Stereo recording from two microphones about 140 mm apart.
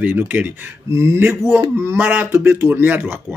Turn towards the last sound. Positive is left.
turn(degrees=-15)  # may be behind; listen again after turning